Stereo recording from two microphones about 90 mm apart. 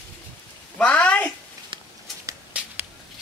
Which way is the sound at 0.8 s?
15° left (ahead or behind).